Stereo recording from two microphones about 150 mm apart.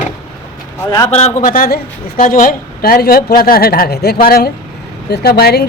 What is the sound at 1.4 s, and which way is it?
A woman's voice, 70° left (ahead or behind).